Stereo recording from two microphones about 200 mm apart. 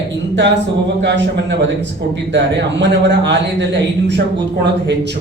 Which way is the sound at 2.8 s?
60° right (ahead or behind).